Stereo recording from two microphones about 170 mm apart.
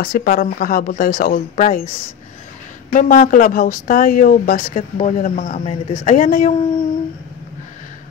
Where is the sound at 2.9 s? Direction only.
50° left (ahead or behind).